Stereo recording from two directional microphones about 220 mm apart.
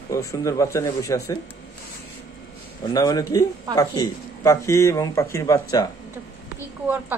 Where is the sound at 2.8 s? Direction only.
15° left (ahead or behind).